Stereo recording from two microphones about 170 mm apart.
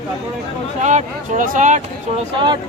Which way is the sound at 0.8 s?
45° right (ahead or behind).